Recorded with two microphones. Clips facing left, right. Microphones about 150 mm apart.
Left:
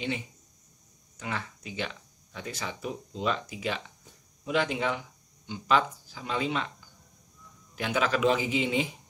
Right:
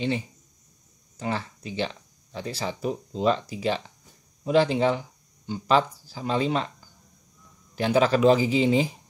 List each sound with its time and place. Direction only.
1.1 s speech: 30° right (ahead or behind)
7.7 s speech: 35° right (ahead or behind)